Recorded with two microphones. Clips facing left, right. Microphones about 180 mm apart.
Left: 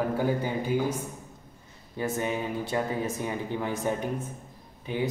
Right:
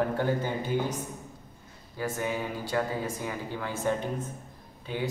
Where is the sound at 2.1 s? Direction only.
20° left (ahead or behind).